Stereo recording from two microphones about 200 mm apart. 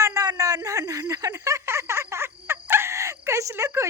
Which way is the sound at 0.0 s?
15° right (ahead or behind).